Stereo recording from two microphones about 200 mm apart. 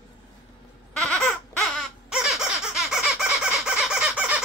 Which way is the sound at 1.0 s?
5° left (ahead or behind).